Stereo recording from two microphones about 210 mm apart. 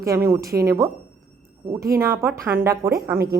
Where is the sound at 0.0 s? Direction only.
15° right (ahead or behind).